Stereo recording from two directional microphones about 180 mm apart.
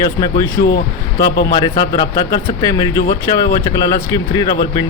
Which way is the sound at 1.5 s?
20° left (ahead or behind).